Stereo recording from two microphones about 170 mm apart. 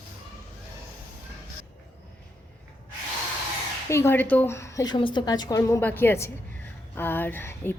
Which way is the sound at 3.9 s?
15° left (ahead or behind).